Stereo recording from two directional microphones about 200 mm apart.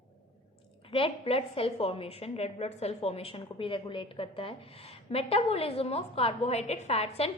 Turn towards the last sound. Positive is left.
turn(degrees=30)  # may be behind; listen again after turning